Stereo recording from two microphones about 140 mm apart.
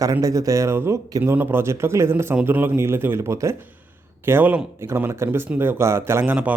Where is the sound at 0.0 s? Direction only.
25° right (ahead or behind).